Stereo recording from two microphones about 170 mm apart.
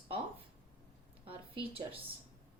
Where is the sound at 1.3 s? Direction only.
35° right (ahead or behind).